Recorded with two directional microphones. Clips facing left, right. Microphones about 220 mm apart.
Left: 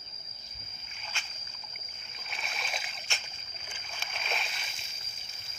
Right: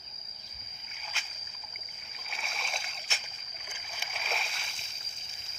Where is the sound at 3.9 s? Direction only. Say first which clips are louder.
Even; 5° right (ahead or behind).